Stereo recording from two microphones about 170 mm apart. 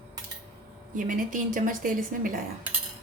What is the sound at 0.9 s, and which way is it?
A woman's voice, 50° right (ahead or behind).